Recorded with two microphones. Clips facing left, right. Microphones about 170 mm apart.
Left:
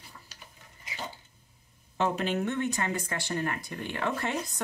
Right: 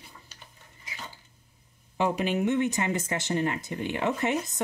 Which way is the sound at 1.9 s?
15° right (ahead or behind).